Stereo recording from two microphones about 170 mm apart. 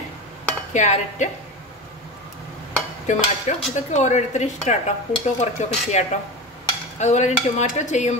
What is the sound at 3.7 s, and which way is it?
Speech, 45° left (ahead or behind).